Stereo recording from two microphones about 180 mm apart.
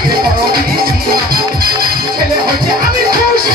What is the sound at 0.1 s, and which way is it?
Music, 55° right (ahead or behind).